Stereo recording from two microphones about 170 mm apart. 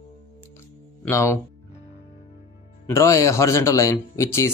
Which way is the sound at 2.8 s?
20° left (ahead or behind).